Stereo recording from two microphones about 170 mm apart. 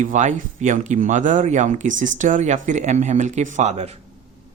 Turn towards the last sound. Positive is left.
turn(degrees=-40)  # may be behind; listen again after turning